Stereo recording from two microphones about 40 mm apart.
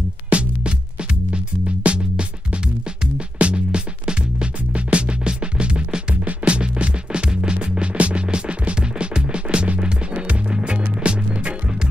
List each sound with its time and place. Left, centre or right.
0.3 s music: right